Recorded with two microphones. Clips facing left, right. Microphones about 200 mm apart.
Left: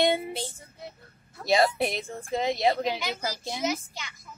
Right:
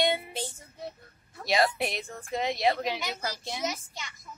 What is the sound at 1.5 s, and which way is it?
Speech, 30° left (ahead or behind).